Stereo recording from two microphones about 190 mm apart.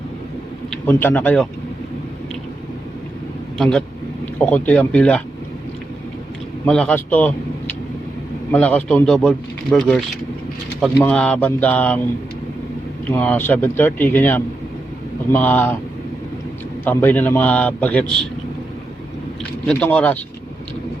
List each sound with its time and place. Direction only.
0.7 s speech: 10° left (ahead or behind)
3.6 s a man's voice: 5° left (ahead or behind)
6.7 s a man's voice: 5° left (ahead or behind)
11.0 s a man's voice: 5° left (ahead or behind)
13.1 s a man's voice: 10° left (ahead or behind)
16.8 s a man's voice: 10° left (ahead or behind)
19.6 s a man's voice: 10° left (ahead or behind)